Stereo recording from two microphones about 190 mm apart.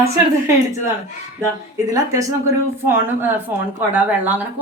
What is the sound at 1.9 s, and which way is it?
Speech, 15° right (ahead or behind).